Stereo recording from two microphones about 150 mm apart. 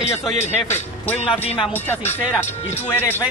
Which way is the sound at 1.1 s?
40° left (ahead or behind).